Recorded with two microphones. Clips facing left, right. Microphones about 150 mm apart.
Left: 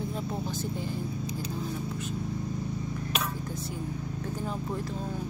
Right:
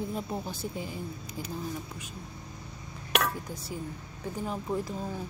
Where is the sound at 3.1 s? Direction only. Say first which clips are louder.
Right 7 dB; 70° right (ahead or behind).